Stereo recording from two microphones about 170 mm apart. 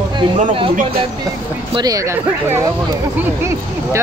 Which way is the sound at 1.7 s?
20° right (ahead or behind).